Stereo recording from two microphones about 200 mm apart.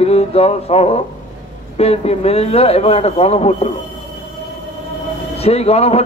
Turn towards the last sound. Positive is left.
turn(degrees=30)  # may be behind; listen again after turning